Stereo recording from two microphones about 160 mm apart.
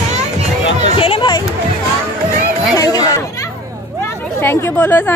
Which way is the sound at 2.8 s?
25° left (ahead or behind).